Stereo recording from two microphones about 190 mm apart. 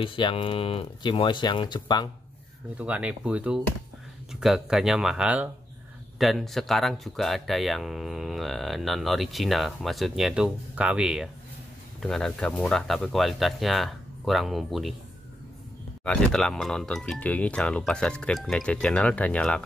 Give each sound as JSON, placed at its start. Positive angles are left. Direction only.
{"t": 0.0, "sound": "speech", "side_deg": 25}
{"t": 2.8, "sound": "speech", "side_deg": -5}
{"t": 16.0, "sound": "speech", "side_deg": 5}